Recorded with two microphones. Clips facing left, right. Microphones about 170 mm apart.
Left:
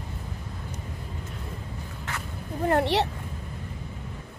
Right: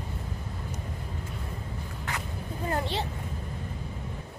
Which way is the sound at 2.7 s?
70° left (ahead or behind).